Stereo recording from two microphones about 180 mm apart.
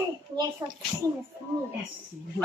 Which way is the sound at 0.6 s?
20° right (ahead or behind).